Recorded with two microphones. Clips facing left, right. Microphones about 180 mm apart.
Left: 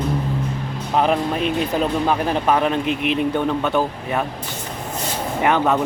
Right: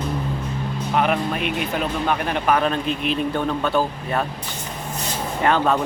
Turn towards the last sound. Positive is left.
turn(degrees=15)  # may be behind; listen again after turning